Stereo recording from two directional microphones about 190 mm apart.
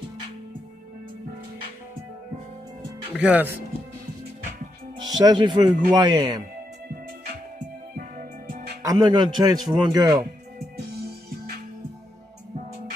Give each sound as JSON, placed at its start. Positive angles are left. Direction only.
{"t": 3.2, "sound": "speech", "side_deg": -10}
{"t": 5.2, "sound": "speech", "side_deg": -25}
{"t": 7.5, "sound": "music", "side_deg": -40}
{"t": 8.8, "sound": "speech", "side_deg": -20}